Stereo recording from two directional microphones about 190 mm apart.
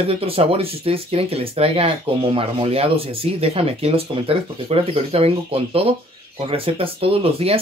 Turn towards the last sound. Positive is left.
turn(degrees=-30)  # may be behind; listen again after turning